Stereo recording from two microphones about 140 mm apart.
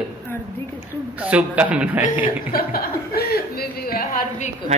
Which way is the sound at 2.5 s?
90° left.